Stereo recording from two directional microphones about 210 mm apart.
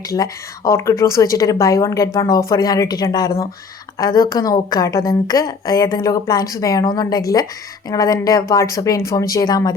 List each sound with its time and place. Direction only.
0.1 s a woman's voice: 15° left (ahead or behind)